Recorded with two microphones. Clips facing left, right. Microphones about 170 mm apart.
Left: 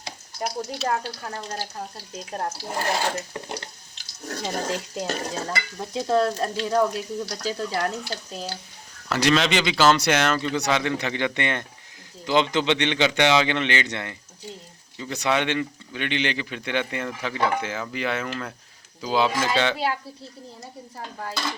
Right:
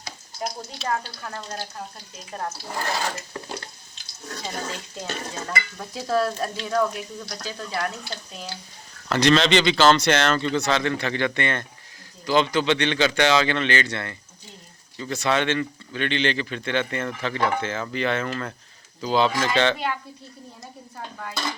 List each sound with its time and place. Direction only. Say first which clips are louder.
2.3 s stir: left 2 dB; 35° left (ahead or behind)
2.6 s stir: left 2 dB; 25° left (ahead or behind)
4.3 s stir: left 5 dB; 45° left (ahead or behind)
5.8 s stir: left 2 dB; 20° left (ahead or behind)
6.6 s stir: left 2 dB; 35° left (ahead or behind)
9.0 s speech: right 2 dB; 5° left (ahead or behind)